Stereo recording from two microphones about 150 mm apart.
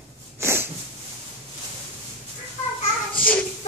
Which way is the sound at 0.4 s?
15° right (ahead or behind).